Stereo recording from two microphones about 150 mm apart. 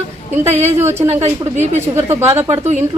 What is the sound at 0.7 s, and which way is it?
Speech, 15° right (ahead or behind).